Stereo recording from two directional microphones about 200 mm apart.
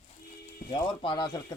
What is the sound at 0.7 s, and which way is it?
Speech, 25° left (ahead or behind).